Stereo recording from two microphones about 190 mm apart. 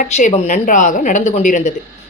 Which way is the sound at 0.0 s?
40° left (ahead or behind).